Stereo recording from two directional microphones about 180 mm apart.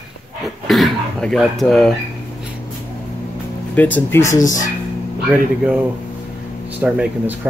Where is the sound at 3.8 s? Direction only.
10° left (ahead or behind).